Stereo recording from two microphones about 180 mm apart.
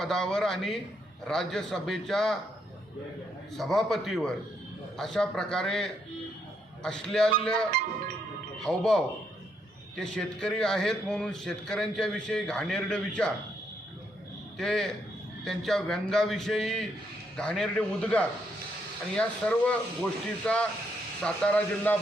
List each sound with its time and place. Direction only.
0.0 s a man's voice: centre (ahead or behind)
3.6 s a man's voice: centre (ahead or behind)
14.6 s a man's voice: 5° left (ahead or behind)